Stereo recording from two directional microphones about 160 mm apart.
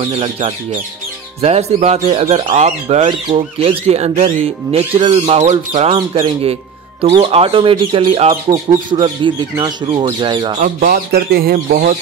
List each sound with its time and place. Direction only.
0.0 s speech: 35° right (ahead or behind)
5.9 s speech: 35° right (ahead or behind)
10.6 s speech: 65° right (ahead or behind)